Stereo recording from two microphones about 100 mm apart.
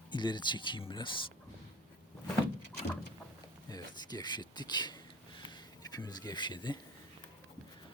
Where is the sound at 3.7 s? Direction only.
45° left (ahead or behind).